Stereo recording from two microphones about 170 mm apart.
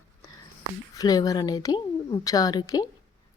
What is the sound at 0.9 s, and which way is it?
Speech, 20° left (ahead or behind).